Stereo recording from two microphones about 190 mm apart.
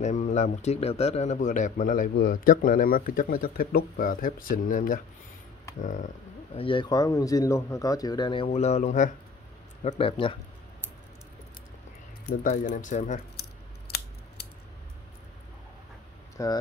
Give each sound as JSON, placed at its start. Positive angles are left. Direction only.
{"t": 0.0, "sound": "speech", "side_deg": 40}
{"t": 6.6, "sound": "speech", "side_deg": 25}
{"t": 9.8, "sound": "speech", "side_deg": 30}
{"t": 12.3, "sound": "speech", "side_deg": 45}
{"t": 13.4, "sound": "scissors", "side_deg": 55}
{"t": 16.4, "sound": "speech", "side_deg": 15}